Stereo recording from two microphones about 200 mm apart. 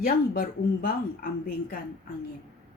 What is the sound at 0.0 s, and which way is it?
A woman's voice, 45° left (ahead or behind).